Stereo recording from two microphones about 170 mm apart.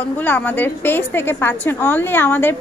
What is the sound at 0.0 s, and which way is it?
A woman's voice, 10° left (ahead or behind).